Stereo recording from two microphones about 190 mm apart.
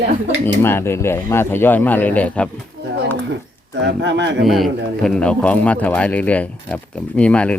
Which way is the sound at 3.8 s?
65° right (ahead or behind).